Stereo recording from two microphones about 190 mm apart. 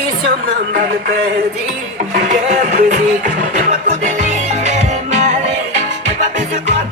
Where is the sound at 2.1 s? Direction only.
40° right (ahead or behind).